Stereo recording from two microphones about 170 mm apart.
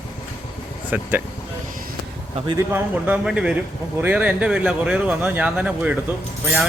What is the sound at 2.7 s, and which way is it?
A man's voice, 10° right (ahead or behind).